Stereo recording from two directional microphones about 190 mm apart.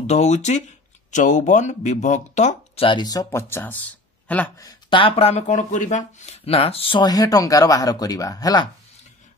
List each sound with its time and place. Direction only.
0.0 s speech: 35° left (ahead or behind); by 4.6 s 10° left (ahead or behind)
4.6 s speech: 25° left (ahead or behind)